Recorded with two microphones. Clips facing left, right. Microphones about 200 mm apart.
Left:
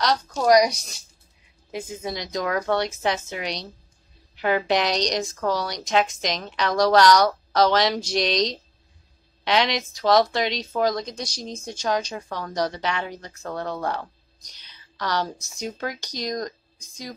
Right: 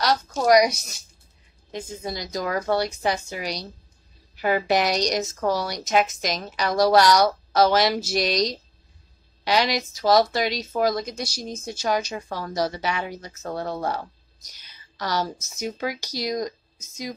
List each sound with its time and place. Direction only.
0.0 s speech: 5° right (ahead or behind)
1.7 s a woman's voice: 5° left (ahead or behind); by 16.5 s 10° right (ahead or behind)
16.7 s a sound: 25° right (ahead or behind)